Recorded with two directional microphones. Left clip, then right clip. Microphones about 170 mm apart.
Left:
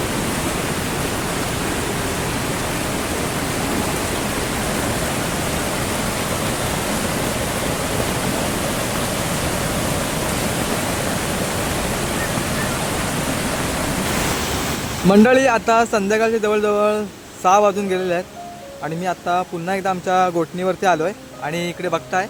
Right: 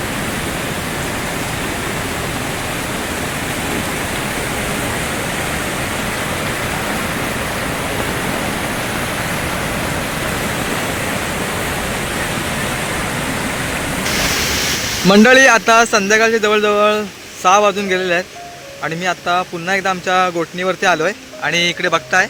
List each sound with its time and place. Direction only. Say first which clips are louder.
15.0 s speech: right 5 dB; centre (ahead or behind)